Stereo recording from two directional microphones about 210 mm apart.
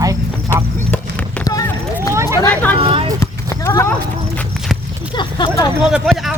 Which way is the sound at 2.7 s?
25° right (ahead or behind).